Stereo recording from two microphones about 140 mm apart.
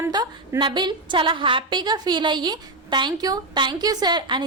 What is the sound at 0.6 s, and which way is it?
A woman's voice, 35° right (ahead or behind).